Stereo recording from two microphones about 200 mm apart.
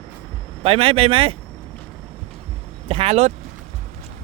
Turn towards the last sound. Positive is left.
turn(degrees=-30)  # may be behind; listen again after turning